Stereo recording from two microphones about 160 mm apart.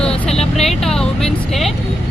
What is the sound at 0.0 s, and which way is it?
Vehicle, 5° left (ahead or behind).